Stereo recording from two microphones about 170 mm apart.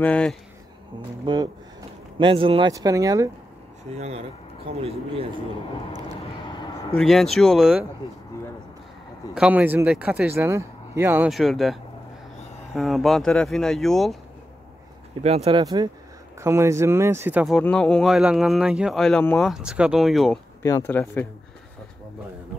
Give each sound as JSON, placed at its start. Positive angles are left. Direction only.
{"t": 0.0, "sound": "speech", "side_deg": 5}
{"t": 1.2, "sound": "speech", "side_deg": -25}
{"t": 2.7, "sound": "speech", "side_deg": -20}
{"t": 3.9, "sound": "speech", "side_deg": -40}
{"t": 7.0, "sound": "speech", "side_deg": 0}
{"t": 9.3, "sound": "speech", "side_deg": -5}
{"t": 11.2, "sound": "speech", "side_deg": 0}
{"t": 15.2, "sound": "speech", "side_deg": -35}
{"t": 15.6, "sound": "speech", "side_deg": -25}
{"t": 17.6, "sound": "speech", "side_deg": 5}
{"t": 20.6, "sound": "speech", "side_deg": 15}